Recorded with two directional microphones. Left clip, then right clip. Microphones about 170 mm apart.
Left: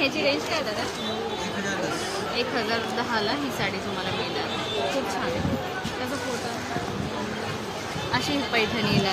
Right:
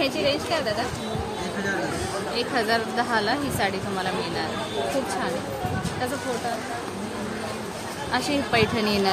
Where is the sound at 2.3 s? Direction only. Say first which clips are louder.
Right 3 dB; 75° right (ahead or behind).